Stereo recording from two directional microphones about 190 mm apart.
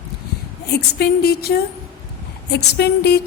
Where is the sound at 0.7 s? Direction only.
60° left (ahead or behind).